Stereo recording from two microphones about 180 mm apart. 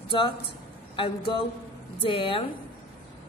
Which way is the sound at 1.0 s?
30° left (ahead or behind).